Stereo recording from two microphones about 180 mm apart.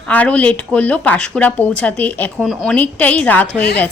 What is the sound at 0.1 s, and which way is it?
Speech, 10° left (ahead or behind).